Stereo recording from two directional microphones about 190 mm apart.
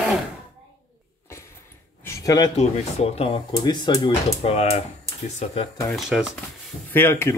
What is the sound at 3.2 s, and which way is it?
Speech, 25° left (ahead or behind).